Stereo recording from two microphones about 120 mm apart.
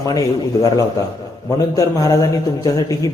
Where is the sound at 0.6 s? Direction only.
30° left (ahead or behind).